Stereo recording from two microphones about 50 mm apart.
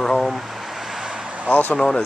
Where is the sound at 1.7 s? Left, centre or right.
Centre.